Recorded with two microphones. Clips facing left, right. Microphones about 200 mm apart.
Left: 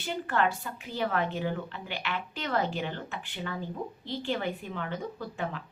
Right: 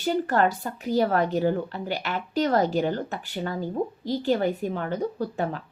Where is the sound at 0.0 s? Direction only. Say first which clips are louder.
Right 6 dB; 40° right (ahead or behind).